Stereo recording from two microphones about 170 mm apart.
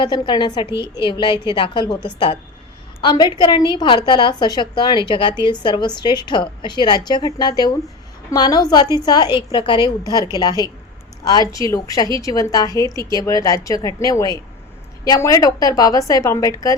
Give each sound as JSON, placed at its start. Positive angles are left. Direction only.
{"t": 0.0, "sound": "a woman's voice", "side_deg": 25}
{"t": 11.3, "sound": "a woman's voice", "side_deg": 20}